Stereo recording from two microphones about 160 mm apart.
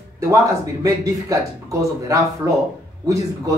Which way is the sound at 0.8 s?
20° right (ahead or behind).